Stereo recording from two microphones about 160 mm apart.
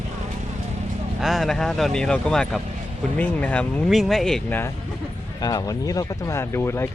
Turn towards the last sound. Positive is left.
turn(degrees=15)  # may be behind; listen again after turning